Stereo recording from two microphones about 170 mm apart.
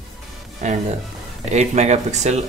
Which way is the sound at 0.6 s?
45° right (ahead or behind).